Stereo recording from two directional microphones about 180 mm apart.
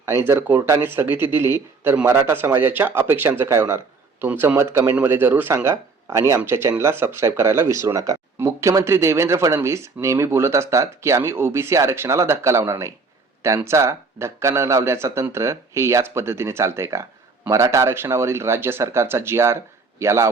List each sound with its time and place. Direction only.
0.0 s speech: 15° right (ahead or behind)